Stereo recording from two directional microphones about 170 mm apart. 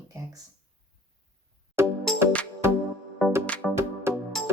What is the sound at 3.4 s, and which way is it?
Music, 10° left (ahead or behind).